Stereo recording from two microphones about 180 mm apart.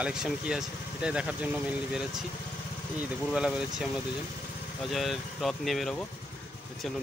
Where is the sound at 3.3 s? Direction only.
5° right (ahead or behind).